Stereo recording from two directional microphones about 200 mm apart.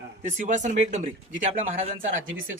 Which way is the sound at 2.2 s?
75° right (ahead or behind).